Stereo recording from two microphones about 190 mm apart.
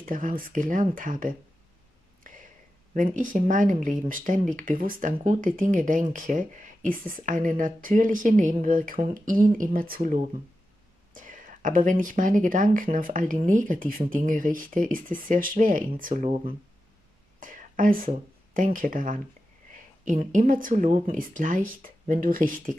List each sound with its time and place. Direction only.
0.0 s speech: 45° right (ahead or behind)
2.9 s speech: 45° right (ahead or behind)
11.1 s speech: 45° right (ahead or behind)